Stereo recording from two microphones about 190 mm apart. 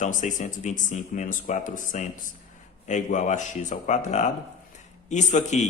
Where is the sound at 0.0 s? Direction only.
40° left (ahead or behind).